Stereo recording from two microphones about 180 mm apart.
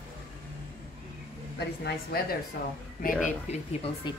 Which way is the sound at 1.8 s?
55° left (ahead or behind).